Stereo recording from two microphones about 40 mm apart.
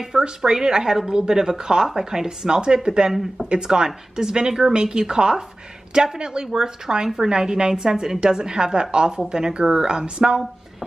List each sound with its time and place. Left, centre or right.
0.0 s a woman's voice: centre